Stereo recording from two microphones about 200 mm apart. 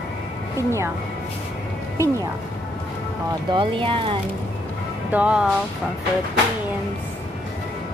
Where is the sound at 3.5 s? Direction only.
25° right (ahead or behind).